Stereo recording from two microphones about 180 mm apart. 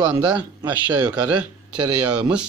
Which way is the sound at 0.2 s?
25° right (ahead or behind).